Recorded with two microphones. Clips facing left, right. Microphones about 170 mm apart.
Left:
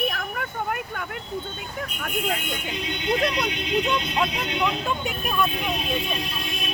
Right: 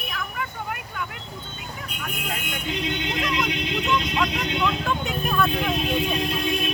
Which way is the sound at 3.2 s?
35° left (ahead or behind).